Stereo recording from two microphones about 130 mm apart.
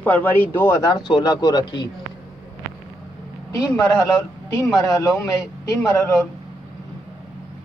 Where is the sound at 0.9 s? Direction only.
35° left (ahead or behind).